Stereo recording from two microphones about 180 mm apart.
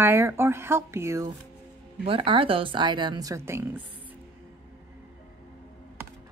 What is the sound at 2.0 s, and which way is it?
A woman's voice, 30° right (ahead or behind).